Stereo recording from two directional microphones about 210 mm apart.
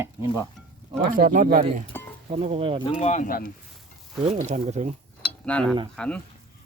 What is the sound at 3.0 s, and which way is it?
Speech, 35° left (ahead or behind).